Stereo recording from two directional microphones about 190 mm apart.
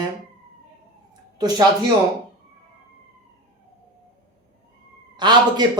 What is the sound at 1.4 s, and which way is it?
Speech, 20° right (ahead or behind).